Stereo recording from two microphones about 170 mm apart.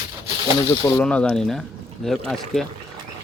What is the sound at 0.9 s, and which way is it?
Speech, 10° left (ahead or behind).